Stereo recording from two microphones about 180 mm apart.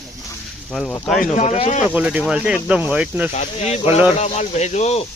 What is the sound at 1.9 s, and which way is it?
Speech, 5° right (ahead or behind).